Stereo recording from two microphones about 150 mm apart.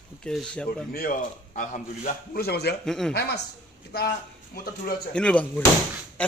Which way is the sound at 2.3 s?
90° left.